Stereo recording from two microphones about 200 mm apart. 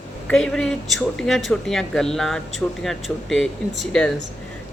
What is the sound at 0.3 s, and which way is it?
Speech, 5° left (ahead or behind).